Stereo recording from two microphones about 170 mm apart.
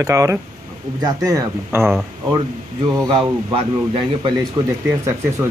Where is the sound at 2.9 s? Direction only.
20° right (ahead or behind).